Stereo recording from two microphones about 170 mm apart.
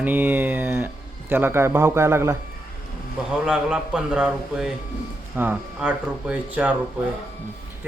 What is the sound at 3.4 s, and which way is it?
A man's voice, 5° right (ahead or behind).